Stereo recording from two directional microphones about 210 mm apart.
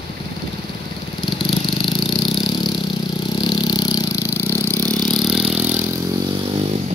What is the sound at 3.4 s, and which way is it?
Vehicle, 20° left (ahead or behind).